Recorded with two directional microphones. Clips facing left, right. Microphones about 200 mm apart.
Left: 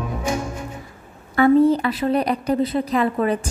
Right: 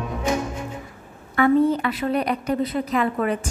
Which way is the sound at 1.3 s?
35° left (ahead or behind).